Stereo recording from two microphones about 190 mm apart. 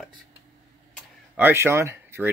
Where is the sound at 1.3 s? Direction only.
10° right (ahead or behind).